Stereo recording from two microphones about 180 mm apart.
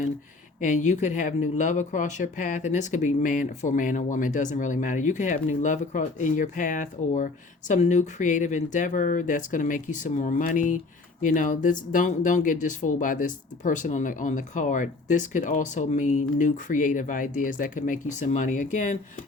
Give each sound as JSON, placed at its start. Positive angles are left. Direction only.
{"t": 0.6, "sound": "speech", "side_deg": 45}